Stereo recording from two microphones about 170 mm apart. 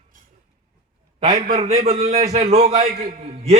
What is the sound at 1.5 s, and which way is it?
A man's voice, 40° right (ahead or behind).